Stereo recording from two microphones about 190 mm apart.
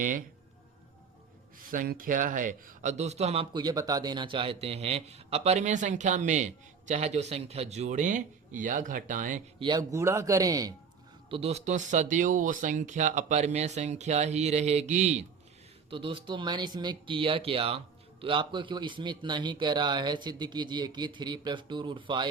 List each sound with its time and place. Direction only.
0.0 s speech: 45° right (ahead or behind)
1.7 s speech: 45° right (ahead or behind)
9.6 s a man's voice: 20° right (ahead or behind)
11.3 s speech: 30° right (ahead or behind)